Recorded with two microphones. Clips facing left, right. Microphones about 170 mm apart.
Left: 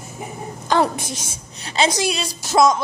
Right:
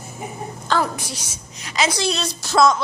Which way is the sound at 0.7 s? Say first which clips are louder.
Left 3 dB; 15° left (ahead or behind).